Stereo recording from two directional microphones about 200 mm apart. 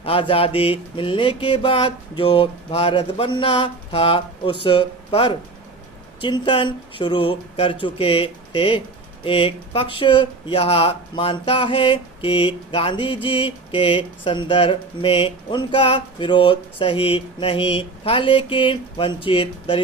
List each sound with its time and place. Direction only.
0.0 s speech: 25° left (ahead or behind)